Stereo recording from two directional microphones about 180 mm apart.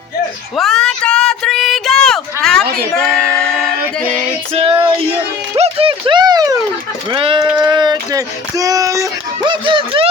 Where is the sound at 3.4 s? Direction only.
5° left (ahead or behind).